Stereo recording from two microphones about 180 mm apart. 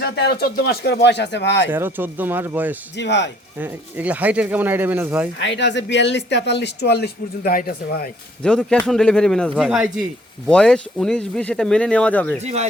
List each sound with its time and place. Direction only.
0.0 s speech: 65° left (ahead or behind)
1.7 s speech: 10° right (ahead or behind)
3.0 s speech: 75° left (ahead or behind)
3.6 s speech: 10° right (ahead or behind)
5.4 s speech: 80° left; by 8.1 s 55° left (ahead or behind)
8.4 s speech: 5° left (ahead or behind)
12.4 s speech: 40° right (ahead or behind)